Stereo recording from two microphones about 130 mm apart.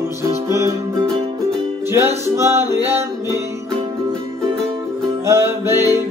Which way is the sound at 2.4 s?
20° right (ahead or behind).